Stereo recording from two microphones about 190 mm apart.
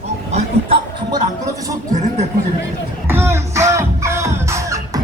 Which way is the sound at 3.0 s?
10° right (ahead or behind).